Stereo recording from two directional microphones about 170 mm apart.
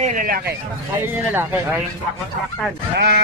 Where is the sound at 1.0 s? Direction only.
10° right (ahead or behind).